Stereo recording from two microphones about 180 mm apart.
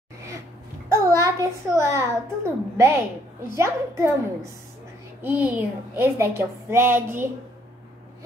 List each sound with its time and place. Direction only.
0.8 s a child's voice: 15° right (ahead or behind)